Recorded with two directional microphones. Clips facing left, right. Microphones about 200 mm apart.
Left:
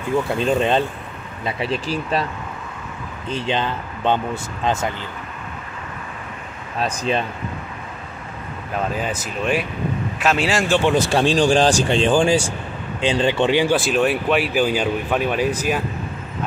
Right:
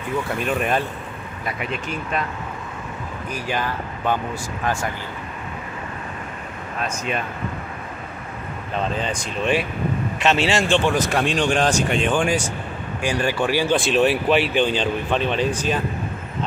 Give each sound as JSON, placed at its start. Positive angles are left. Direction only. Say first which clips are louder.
{"t": 0.4, "sound": "speech", "louder": "left 4 dB", "side_deg": 25}
{"t": 3.3, "sound": "speech", "louder": "left 4 dB", "side_deg": 25}
{"t": 6.8, "sound": "speech", "louder": "left 5 dB", "side_deg": 30}
{"t": 8.7, "sound": "speech", "louder": "left 1 dB", "side_deg": 5}
{"t": 10.8, "sound": "speech", "louder": "left 3 dB", "side_deg": 25}
{"t": 13.7, "sound": "speech", "louder": "even", "side_deg": 0}